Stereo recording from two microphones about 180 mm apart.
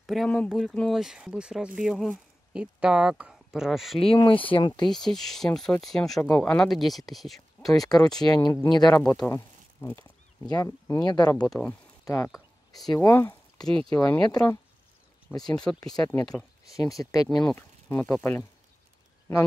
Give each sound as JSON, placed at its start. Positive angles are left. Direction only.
{"t": 0.0, "sound": "speech", "side_deg": 0}
{"t": 4.0, "sound": "speech", "side_deg": 30}
{"t": 4.8, "sound": "speech", "side_deg": 0}
{"t": 7.8, "sound": "speech", "side_deg": 20}
{"t": 9.2, "sound": "speech", "side_deg": 10}
{"t": 11.4, "sound": "speech", "side_deg": 5}
{"t": 12.0, "sound": "speech", "side_deg": 15}
{"t": 17.0, "sound": "speech", "side_deg": 20}